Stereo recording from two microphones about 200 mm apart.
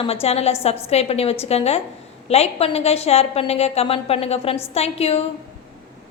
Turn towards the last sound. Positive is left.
turn(degrees=30)  # may be behind; listen again after turning